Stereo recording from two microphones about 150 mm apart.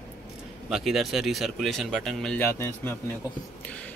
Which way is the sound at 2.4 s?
15° left (ahead or behind).